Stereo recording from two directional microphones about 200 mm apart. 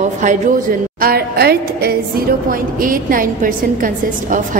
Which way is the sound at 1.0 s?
50° right (ahead or behind).